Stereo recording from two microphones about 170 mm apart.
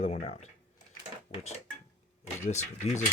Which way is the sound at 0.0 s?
40° left (ahead or behind).